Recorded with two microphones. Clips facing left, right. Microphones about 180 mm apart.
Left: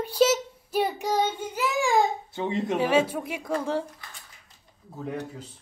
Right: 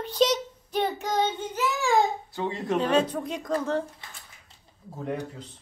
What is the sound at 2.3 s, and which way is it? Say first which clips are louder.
Speech: left 1 dB; 20° left (ahead or behind).